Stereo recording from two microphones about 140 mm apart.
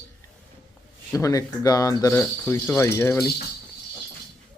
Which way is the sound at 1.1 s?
20° left (ahead or behind).